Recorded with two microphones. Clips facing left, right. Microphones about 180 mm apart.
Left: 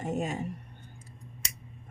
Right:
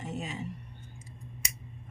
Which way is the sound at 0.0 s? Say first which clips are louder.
Left 6 dB; 50° left (ahead or behind).